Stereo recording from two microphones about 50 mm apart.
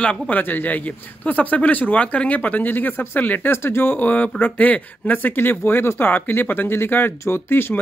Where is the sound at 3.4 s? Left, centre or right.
Left.